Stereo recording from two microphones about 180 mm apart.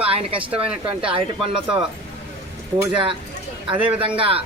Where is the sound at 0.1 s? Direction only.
30° right (ahead or behind).